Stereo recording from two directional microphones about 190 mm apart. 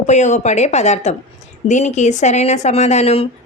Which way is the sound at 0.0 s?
40° left (ahead or behind).